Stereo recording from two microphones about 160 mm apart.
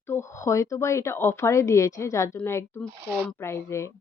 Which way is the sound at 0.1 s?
15° left (ahead or behind).